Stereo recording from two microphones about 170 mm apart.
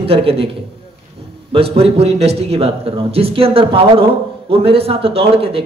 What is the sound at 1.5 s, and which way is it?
A man's voice, 35° right (ahead or behind).